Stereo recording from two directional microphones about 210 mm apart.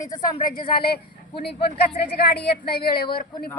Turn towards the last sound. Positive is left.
turn(degrees=45)  # may be behind; listen again after turning